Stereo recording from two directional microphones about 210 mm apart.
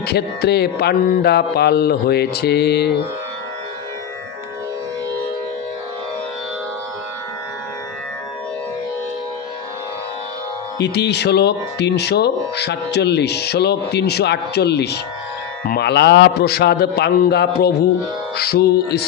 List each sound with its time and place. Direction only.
0.0 s speech: 50° left (ahead or behind)
10.8 s speech: 55° left (ahead or behind)